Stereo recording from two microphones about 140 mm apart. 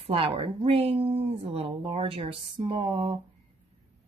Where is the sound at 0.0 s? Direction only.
40° right (ahead or behind).